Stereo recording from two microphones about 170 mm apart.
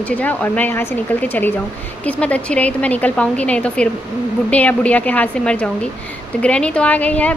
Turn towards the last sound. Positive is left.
turn(degrees=10)  # may be behind; listen again after turning